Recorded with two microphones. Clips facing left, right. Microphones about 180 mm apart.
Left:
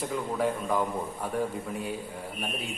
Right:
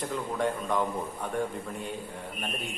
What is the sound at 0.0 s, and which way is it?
A man's voice, 5° left (ahead or behind).